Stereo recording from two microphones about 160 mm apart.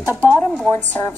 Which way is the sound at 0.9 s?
15° left (ahead or behind).